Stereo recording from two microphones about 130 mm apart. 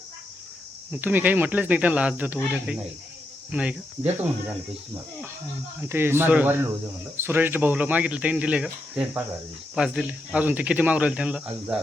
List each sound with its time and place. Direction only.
0.9 s speech: 15° right (ahead or behind)
5.8 s speech: 15° right (ahead or behind)